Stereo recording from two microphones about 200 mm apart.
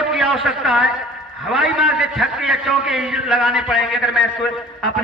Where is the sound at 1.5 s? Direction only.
5° right (ahead or behind).